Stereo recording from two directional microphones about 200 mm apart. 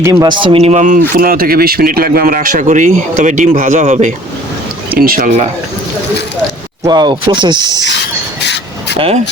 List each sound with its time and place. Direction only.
0.0 s speech: 15° right (ahead or behind); by 4.1 s 35° right (ahead or behind)
4.9 s speech: 45° right (ahead or behind)
6.8 s speech: 20° right (ahead or behind)